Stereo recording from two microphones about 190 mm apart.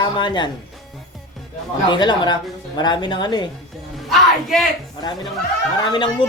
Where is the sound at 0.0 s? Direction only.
25° left (ahead or behind).